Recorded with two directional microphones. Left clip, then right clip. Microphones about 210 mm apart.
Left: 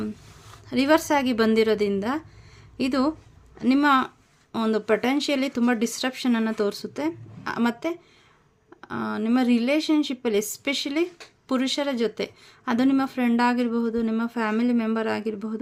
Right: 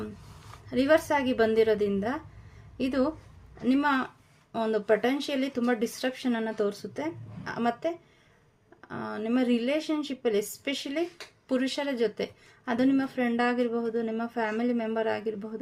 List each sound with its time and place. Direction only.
0.7 s speech: 40° left (ahead or behind)